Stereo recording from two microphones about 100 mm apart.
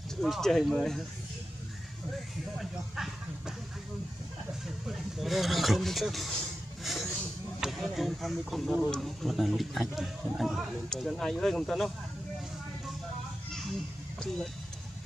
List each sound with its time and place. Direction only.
0.2 s speech: 5° left (ahead or behind)
2.6 s speech: 5° right (ahead or behind)
4.8 s speech: centre (ahead or behind)
13.5 s children playing: 5° left (ahead or behind)
14.2 s speech: 5° left (ahead or behind)